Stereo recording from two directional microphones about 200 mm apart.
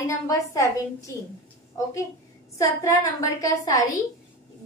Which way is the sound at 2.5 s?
15° left (ahead or behind).